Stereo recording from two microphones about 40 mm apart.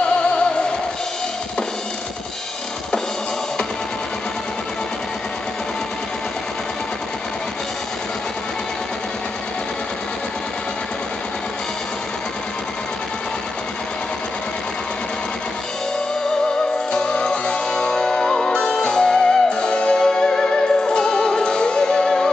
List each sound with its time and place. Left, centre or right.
0.0 s music: left
16.9 s music: left